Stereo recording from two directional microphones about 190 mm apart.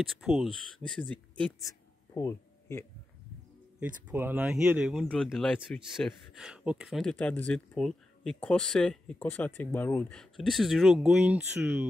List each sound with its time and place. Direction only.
0.1 s speech: centre (ahead or behind); by 2.8 s 15° left (ahead or behind)
3.8 s speech: 10° right (ahead or behind)